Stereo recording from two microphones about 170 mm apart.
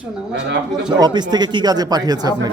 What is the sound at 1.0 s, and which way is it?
Speech, 25° right (ahead or behind).